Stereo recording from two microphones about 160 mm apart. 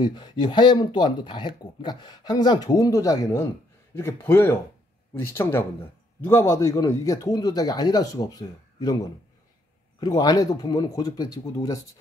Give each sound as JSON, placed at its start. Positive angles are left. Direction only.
{"t": 0.0, "sound": "speech", "side_deg": 25}